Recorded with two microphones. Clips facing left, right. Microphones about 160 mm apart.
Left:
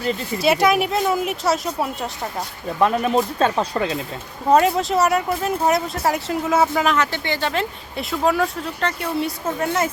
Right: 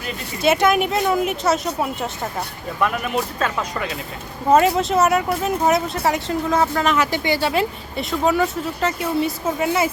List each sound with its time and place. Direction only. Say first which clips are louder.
0.4 s speech: right 1 dB; centre (ahead or behind)
2.8 s speech: left 4 dB; 35° left (ahead or behind)
4.4 s speech: right 1 dB; centre (ahead or behind)
6.9 s speech: right 2 dB; 10° right (ahead or behind)